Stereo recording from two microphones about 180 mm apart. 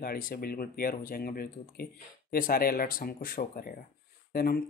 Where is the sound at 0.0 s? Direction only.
55° left (ahead or behind).